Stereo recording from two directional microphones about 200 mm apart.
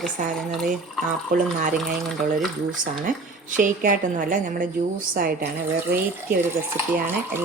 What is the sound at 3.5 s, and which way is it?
Speech, 40° right (ahead or behind).